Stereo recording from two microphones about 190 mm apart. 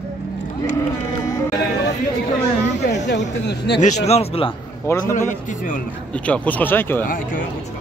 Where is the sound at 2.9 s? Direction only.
65° left (ahead or behind).